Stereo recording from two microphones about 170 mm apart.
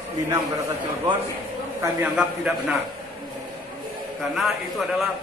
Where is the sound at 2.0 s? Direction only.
5° right (ahead or behind).